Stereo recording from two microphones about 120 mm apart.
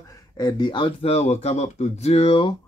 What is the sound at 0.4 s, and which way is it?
Speech, 35° left (ahead or behind).